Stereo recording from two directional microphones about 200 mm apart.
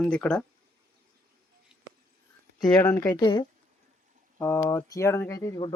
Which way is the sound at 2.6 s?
20° left (ahead or behind).